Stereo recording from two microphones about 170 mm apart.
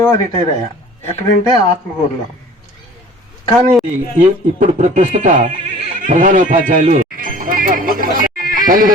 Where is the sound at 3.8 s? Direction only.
45° right (ahead or behind).